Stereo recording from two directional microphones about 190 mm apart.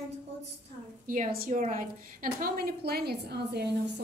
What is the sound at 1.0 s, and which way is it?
A woman's voice, 45° right (ahead or behind).